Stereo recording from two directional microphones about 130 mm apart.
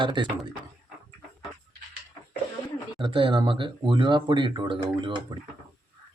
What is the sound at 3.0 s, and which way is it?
Speech, 40° right (ahead or behind).